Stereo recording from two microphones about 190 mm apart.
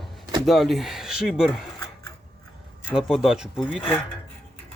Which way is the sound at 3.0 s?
Centre (ahead or behind).